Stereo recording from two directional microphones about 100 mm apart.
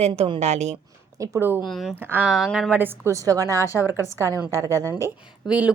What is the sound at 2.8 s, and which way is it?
Speech, 20° right (ahead or behind).